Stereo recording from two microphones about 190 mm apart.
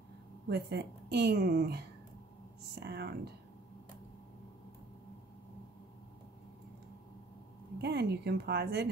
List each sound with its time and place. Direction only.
0.5 s a woman's voice: 60° right (ahead or behind)
7.8 s a woman's voice: 60° right (ahead or behind)